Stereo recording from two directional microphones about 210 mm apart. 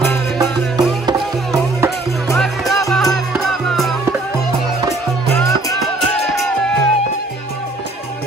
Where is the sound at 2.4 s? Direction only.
Centre (ahead or behind).